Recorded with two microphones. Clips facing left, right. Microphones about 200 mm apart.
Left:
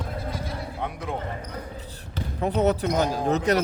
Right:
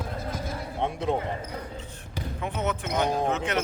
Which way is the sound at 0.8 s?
25° right (ahead or behind).